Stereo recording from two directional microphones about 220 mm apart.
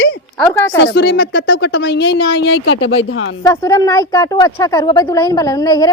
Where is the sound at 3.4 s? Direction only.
15° left (ahead or behind).